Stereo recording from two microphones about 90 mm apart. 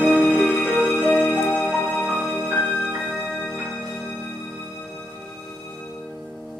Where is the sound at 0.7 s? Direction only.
15° left (ahead or behind).